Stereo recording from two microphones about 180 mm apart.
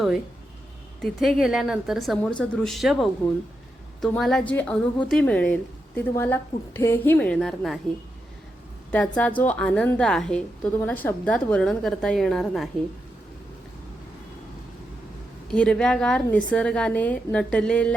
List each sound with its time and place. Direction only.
1.0 s a woman's voice: centre (ahead or behind)
8.9 s a woman's voice: 10° left (ahead or behind)
15.4 s a woman's voice: 5° left (ahead or behind)